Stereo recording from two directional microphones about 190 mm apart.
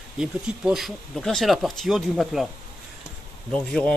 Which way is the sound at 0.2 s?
5° right (ahead or behind).